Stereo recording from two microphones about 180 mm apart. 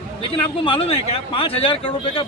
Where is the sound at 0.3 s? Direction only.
30° left (ahead or behind).